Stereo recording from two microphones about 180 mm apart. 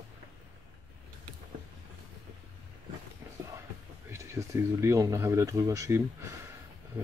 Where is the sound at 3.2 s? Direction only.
15° right (ahead or behind).